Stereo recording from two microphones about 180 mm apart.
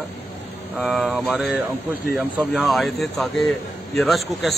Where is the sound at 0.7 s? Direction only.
Centre (ahead or behind).